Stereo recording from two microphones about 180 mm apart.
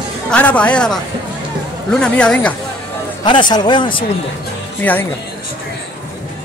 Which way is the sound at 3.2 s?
25° left (ahead or behind).